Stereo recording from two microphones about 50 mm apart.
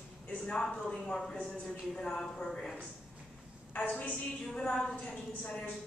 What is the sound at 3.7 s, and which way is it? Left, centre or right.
A woman's voice, left.